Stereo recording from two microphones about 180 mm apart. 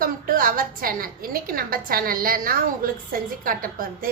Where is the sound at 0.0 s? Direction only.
50° right (ahead or behind).